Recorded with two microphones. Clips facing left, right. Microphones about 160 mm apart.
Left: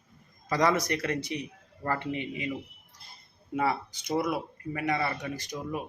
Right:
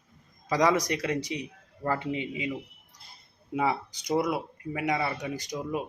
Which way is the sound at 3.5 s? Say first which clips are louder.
Right 1 dB; 15° right (ahead or behind).